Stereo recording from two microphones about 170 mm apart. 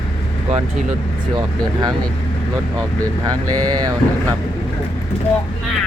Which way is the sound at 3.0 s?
20° right (ahead or behind).